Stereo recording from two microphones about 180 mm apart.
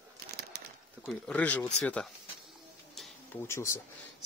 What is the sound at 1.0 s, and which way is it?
Speech, 5° left (ahead or behind).